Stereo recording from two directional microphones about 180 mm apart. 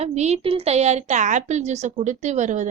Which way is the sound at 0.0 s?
40° right (ahead or behind).